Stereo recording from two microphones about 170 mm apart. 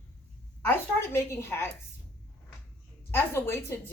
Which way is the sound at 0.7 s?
15° left (ahead or behind).